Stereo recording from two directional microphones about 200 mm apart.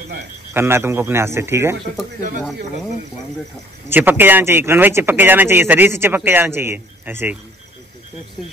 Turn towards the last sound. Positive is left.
turn(degrees=-10)  # may be behind; listen again after turning